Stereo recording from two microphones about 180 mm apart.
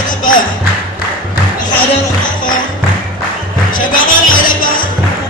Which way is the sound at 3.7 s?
50° left (ahead or behind).